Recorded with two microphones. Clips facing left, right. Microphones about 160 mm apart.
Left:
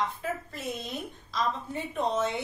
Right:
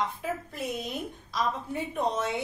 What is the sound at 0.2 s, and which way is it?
A woman's voice, 10° right (ahead or behind).